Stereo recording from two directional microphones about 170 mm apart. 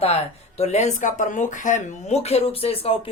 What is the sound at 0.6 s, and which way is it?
Speech, 40° left (ahead or behind).